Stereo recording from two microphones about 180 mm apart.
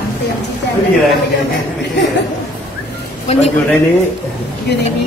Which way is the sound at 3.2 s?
35° left (ahead or behind).